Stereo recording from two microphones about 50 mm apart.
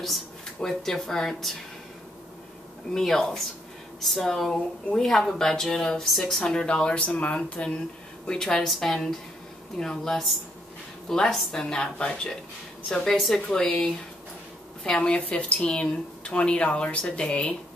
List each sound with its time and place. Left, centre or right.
0.6 s speech: centre
2.9 s speech: centre; by 7.8 s left
8.3 s speech: centre